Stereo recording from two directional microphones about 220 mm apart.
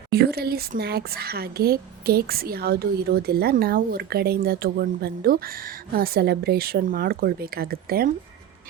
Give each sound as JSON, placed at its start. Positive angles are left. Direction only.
{"t": 0.1, "sound": "speech", "side_deg": -45}